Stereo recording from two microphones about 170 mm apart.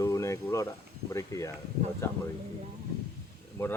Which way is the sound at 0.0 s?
20° left (ahead or behind).